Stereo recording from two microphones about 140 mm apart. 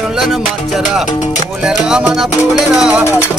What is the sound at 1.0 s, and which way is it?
Music, 60° left (ahead or behind).